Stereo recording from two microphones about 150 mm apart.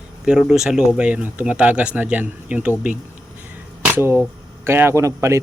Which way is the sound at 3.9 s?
15° right (ahead or behind).